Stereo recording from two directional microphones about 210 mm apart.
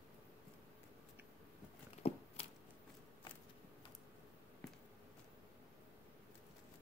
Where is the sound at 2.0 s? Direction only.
30° left (ahead or behind).